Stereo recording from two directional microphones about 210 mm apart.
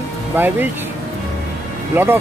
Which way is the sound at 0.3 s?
10° right (ahead or behind).